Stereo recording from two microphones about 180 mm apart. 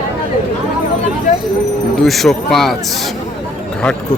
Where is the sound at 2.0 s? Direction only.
Centre (ahead or behind).